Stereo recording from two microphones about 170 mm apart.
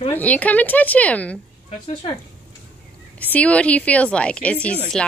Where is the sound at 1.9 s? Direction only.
30° left (ahead or behind).